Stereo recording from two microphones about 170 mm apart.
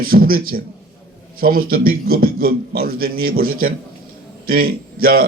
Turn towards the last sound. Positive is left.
turn(degrees=-60)  # may be behind; listen again after turning